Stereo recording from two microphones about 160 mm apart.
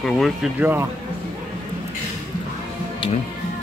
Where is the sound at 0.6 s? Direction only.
10° right (ahead or behind).